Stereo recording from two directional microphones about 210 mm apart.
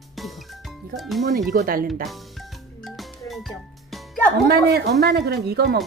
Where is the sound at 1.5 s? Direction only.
45° right (ahead or behind).